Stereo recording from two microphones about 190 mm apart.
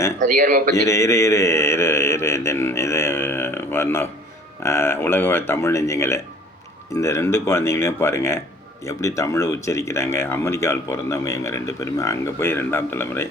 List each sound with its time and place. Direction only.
0.2 s a man's voice: 45° right (ahead or behind)
0.9 s mantra: 15° left (ahead or behind)
4.6 s speech: 15° left (ahead or behind)